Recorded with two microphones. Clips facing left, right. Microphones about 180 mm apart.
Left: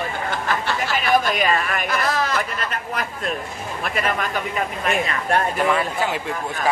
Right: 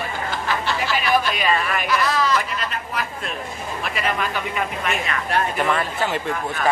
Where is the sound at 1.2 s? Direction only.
45° left (ahead or behind).